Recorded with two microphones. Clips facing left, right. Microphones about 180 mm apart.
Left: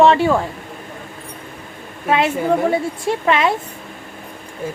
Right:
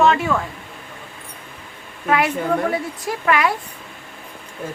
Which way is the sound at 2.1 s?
25° left (ahead or behind).